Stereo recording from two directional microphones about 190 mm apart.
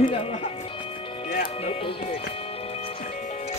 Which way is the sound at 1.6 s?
30° left (ahead or behind).